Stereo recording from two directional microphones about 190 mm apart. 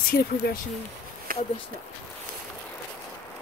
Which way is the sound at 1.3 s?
50° right (ahead or behind).